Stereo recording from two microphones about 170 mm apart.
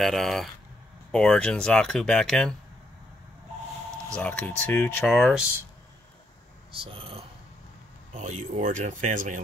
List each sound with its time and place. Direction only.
0.0 s speech: centre (ahead or behind)
4.1 s speech: 10° left (ahead or behind)
5.1 s speech: centre (ahead or behind)
6.7 s speech: 30° right (ahead or behind)
8.1 s speech: 45° right (ahead or behind)